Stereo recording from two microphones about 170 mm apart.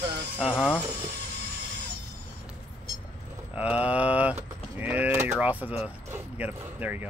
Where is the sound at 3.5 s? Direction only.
10° right (ahead or behind).